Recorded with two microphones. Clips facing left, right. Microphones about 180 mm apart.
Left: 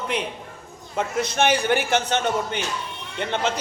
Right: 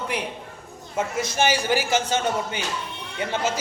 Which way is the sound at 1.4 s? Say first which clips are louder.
Left 2 dB; 60° left (ahead or behind).